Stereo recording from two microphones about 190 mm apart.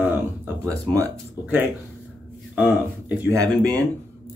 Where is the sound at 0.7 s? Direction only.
10° left (ahead or behind).